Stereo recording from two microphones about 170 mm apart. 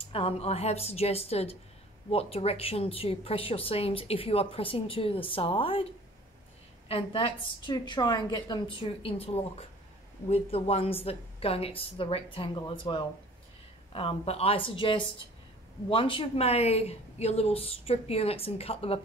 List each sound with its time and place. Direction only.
0.0 s a woman's voice: 35° left (ahead or behind)
6.9 s a woman's voice: 30° left (ahead or behind)